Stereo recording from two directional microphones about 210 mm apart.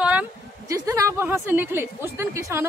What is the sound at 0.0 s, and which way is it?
A woman's voice, 5° right (ahead or behind).